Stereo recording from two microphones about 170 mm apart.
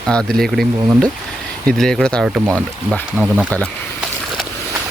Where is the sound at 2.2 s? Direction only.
5° right (ahead or behind).